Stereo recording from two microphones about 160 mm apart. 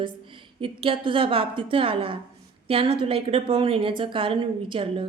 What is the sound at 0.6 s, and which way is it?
A woman's voice, 35° right (ahead or behind).